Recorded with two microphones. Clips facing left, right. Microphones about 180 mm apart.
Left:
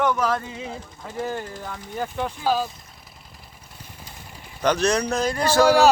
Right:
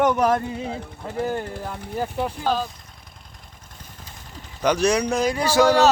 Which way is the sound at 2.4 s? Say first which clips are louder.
Left 2 dB; 5° left (ahead or behind).